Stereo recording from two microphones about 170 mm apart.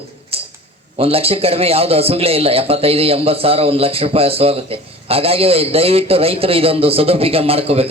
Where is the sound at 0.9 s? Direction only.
35° right (ahead or behind).